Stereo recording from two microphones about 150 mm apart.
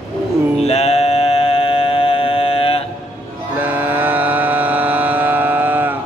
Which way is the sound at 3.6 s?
10° right (ahead or behind).